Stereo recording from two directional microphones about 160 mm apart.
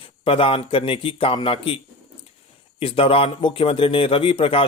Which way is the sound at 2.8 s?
35° left (ahead or behind).